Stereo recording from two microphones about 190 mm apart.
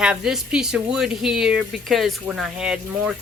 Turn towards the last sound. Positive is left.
turn(degrees=-5)  # may be behind; listen again after turning